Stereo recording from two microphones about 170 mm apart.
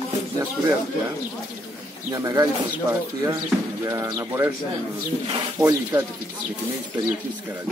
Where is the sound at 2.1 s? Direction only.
20° right (ahead or behind).